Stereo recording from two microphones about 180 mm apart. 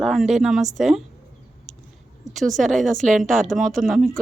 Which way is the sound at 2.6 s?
Centre (ahead or behind).